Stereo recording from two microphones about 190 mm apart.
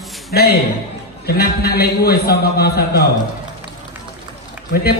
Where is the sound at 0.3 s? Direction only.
55° left (ahead or behind).